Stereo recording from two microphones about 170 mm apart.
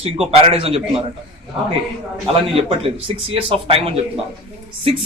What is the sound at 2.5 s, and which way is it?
A man's voice, 35° right (ahead or behind).